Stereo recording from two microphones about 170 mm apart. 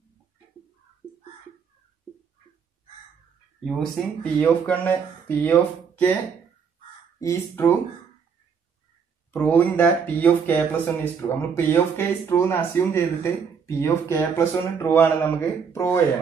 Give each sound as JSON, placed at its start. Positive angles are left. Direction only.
{"t": 4.2, "sound": "speech", "side_deg": 10}
{"t": 7.2, "sound": "speech", "side_deg": 15}
{"t": 9.3, "sound": "speech", "side_deg": 10}